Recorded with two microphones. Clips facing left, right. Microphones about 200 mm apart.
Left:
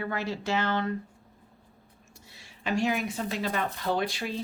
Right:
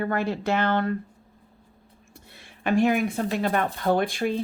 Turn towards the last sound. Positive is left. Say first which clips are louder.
# right 6 dB
turn(degrees=-50)  # may be behind; listen again after turning